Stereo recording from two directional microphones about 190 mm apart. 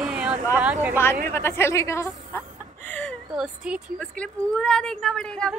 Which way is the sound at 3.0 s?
5° right (ahead or behind).